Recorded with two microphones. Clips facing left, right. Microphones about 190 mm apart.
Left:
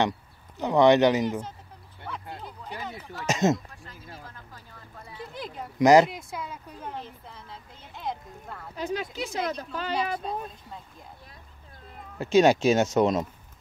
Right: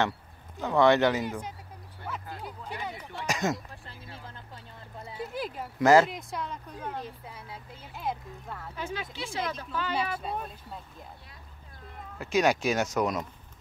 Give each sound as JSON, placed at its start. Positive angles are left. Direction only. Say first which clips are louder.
{"t": 0.6, "sound": "speech", "louder": "left 3 dB", "side_deg": 20}
{"t": 3.3, "sound": "speech", "louder": "left 6 dB", "side_deg": 25}
{"t": 3.8, "sound": "music", "louder": "left 1 dB", "side_deg": -30}
{"t": 5.1, "sound": "a sound", "louder": "right 4 dB", "side_deg": -5}
{"t": 5.8, "sound": "speech", "louder": "left 3 dB", "side_deg": 15}
{"t": 6.0, "sound": "speech", "louder": "even", "side_deg": 5}
{"t": 7.0, "sound": "speech", "louder": "right 1 dB", "side_deg": -10}
{"t": 8.7, "sound": "speech", "louder": "left 7 dB", "side_deg": 40}
{"t": 10.3, "sound": "speech", "louder": "left 2 dB", "side_deg": -5}
{"t": 12.2, "sound": "speech", "louder": "left 6 dB", "side_deg": 25}